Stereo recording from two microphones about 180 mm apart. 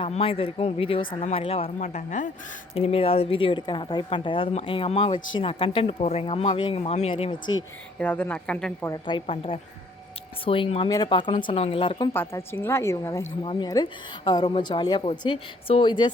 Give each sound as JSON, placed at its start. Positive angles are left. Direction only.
{"t": 0.0, "sound": "speech", "side_deg": 30}
{"t": 2.7, "sound": "a woman's voice", "side_deg": 35}
{"t": 7.9, "sound": "a woman's voice", "side_deg": 10}
{"t": 8.9, "sound": "a woman's voice", "side_deg": 25}
{"t": 12.1, "sound": "a woman's voice", "side_deg": 15}